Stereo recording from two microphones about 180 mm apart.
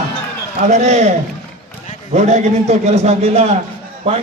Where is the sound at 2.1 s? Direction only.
40° right (ahead or behind).